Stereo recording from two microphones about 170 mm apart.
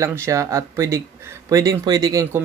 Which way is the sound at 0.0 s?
15° right (ahead or behind).